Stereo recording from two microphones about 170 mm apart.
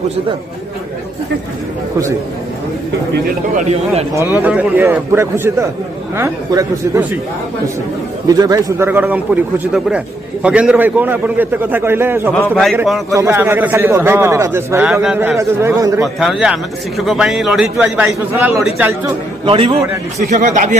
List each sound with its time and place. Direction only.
3.5 s a man's voice: 40° right (ahead or behind)
4.1 s a man's voice: 15° right (ahead or behind)
8.3 s a man's voice: 20° right (ahead or behind)
12.4 s a man's voice: 5° left (ahead or behind)
13.1 s a man's voice: 15° right (ahead or behind)
16.2 s a man's voice: 5° right (ahead or behind)
19.4 s a man's voice: 30° right (ahead or behind)
20.2 s speech: 45° right (ahead or behind)